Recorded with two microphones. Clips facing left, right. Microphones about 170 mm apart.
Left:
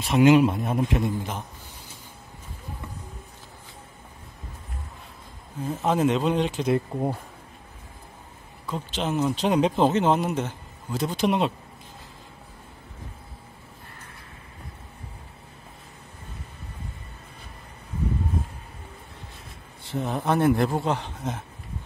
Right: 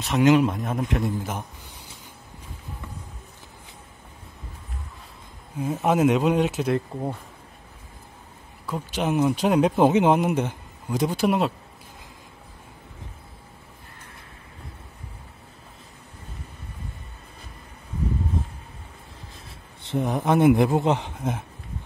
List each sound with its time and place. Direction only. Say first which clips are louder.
0.0 s speech: left 1 dB; 10° left (ahead or behind)
0.9 s speech: even; centre (ahead or behind)
5.6 s speech: right 2 dB; 10° right (ahead or behind)
6.7 s speech: left 1 dB; 5° left (ahead or behind)
8.6 s speech: right 3 dB; 10° right (ahead or behind)
19.8 s speech: right 3 dB; 15° right (ahead or behind)